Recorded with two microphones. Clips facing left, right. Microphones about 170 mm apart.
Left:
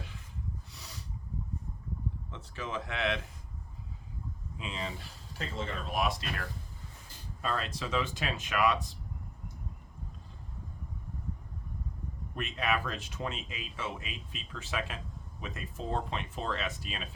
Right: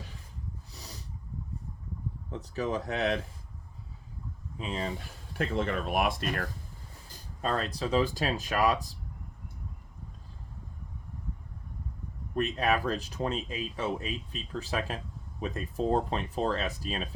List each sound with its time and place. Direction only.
0.7 s a sound: 35° right (ahead or behind)
2.3 s speech: 40° right (ahead or behind)
4.5 s speech: 40° right (ahead or behind)
7.1 s speech: 40° right (ahead or behind)
12.4 s speech: 40° right (ahead or behind)